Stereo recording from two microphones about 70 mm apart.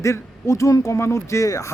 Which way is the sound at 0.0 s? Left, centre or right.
Left.